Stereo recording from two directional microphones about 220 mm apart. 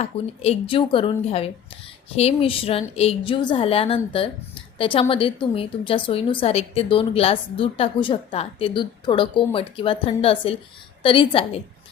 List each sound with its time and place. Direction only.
0.0 s a woman's voice: 25° left (ahead or behind)